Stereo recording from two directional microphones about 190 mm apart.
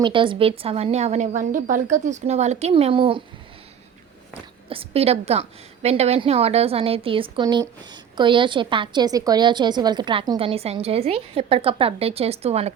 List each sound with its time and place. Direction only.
0.0 s a woman's voice: 25° right (ahead or behind)
4.7 s a woman's voice: 30° right (ahead or behind)